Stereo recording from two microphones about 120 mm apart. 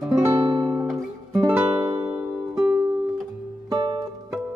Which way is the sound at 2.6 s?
30° right (ahead or behind).